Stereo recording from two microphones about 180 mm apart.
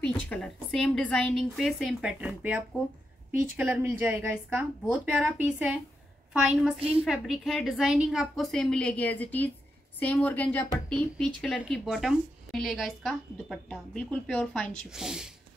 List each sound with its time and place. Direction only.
0.0 s a woman's voice: 5° left (ahead or behind)
6.8 s a woman's voice: 30° right (ahead or behind)
7.1 s a woman's voice: centre (ahead or behind)